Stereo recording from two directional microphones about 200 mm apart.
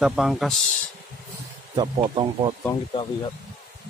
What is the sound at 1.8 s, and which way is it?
Speech, 25° right (ahead or behind).